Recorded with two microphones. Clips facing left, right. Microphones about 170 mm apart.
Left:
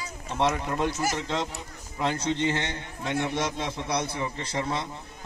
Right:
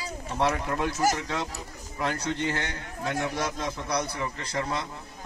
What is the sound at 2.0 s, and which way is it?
A man's voice, 25° left (ahead or behind).